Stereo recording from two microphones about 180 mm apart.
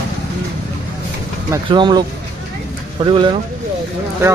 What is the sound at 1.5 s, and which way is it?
Speech, 25° right (ahead or behind).